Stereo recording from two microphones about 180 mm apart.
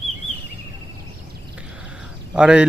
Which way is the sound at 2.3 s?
5° right (ahead or behind).